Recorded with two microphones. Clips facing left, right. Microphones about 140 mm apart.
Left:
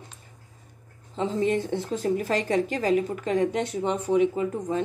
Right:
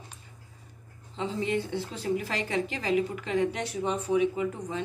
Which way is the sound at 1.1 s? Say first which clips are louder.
Left 5 dB; 45° left (ahead or behind).